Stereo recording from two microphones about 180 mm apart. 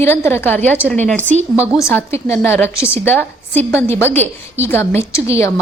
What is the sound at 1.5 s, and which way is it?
Speech, 10° right (ahead or behind).